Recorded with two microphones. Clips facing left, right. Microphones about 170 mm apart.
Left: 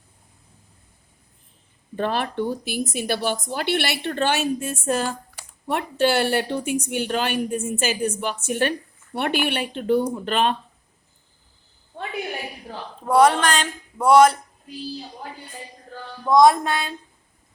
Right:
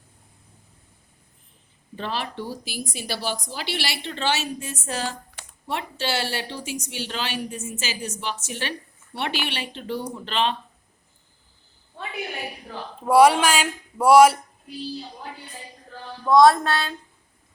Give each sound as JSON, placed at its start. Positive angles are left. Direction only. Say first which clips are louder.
{"t": 2.0, "sound": "a woman's voice", "louder": "left 6 dB", "side_deg": 55}
{"t": 13.1, "sound": "speech", "louder": "right 1 dB", "side_deg": -10}
{"t": 16.2, "sound": "a sound", "louder": "even", "side_deg": 20}